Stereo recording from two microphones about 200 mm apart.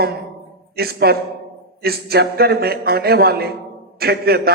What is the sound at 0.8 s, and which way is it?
A man's voice, 50° right (ahead or behind).